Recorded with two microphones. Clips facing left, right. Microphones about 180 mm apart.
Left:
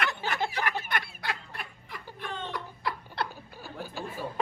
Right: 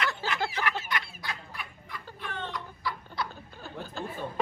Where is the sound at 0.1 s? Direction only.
20° left (ahead or behind).